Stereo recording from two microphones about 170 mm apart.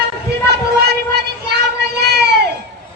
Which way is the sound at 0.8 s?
70° right (ahead or behind).